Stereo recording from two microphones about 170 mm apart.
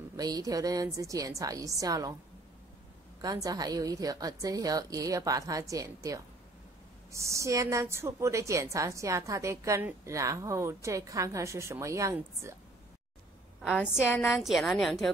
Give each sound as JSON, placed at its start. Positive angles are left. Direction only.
{"t": 0.2, "sound": "a woman's voice", "side_deg": -20}
{"t": 3.2, "sound": "a woman's voice", "side_deg": -20}
{"t": 13.7, "sound": "a woman's voice", "side_deg": 15}
{"t": 14.2, "sound": "a woman's voice", "side_deg": 0}